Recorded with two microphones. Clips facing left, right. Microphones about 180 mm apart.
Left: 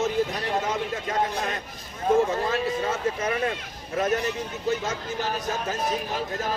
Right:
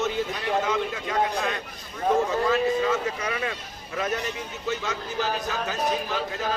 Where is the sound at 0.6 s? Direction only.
40° left (ahead or behind).